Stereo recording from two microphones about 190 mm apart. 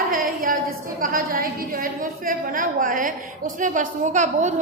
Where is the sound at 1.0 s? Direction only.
50° right (ahead or behind).